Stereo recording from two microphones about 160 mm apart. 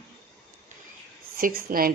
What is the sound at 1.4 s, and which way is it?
Speech, 65° right (ahead or behind).